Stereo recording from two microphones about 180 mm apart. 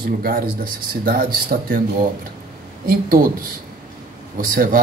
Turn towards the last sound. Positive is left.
turn(degrees=-50)  # may be behind; listen again after turning